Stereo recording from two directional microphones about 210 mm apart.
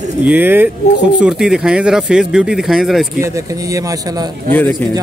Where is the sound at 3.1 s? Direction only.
15° right (ahead or behind).